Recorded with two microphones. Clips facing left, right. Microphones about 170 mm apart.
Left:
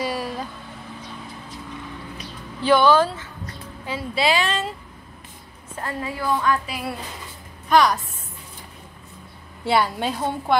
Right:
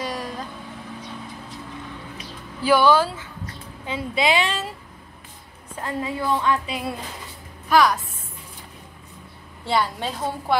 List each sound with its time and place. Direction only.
0.0 s vehicle: 5° left (ahead or behind)
2.6 s a woman's voice: 10° right (ahead or behind)
5.8 s a woman's voice: 20° right (ahead or behind)
7.7 s a woman's voice: centre (ahead or behind)
9.7 s a woman's voice: 5° left (ahead or behind)